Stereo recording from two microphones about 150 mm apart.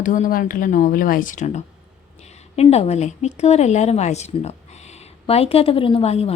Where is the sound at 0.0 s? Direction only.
60° left (ahead or behind).